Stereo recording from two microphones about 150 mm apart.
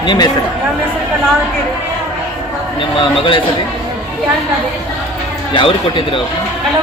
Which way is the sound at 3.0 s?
35° left (ahead or behind).